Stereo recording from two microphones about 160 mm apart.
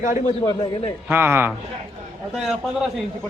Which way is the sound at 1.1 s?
15° right (ahead or behind).